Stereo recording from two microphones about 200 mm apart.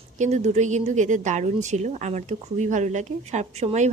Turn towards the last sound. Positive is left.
turn(degrees=-35)  # may be behind; listen again after turning